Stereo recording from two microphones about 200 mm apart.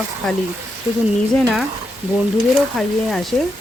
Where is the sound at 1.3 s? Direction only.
5° left (ahead or behind).